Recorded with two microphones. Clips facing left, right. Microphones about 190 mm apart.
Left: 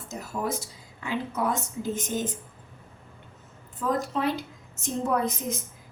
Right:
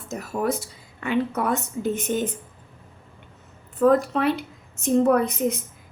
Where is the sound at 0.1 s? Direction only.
65° right (ahead or behind).